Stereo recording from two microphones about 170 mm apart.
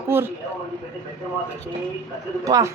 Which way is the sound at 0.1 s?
15° right (ahead or behind).